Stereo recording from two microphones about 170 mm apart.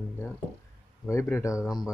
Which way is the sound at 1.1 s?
15° left (ahead or behind).